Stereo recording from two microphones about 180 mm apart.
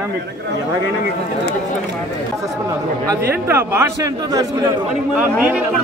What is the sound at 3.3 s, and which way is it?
A man's voice, 10° right (ahead or behind).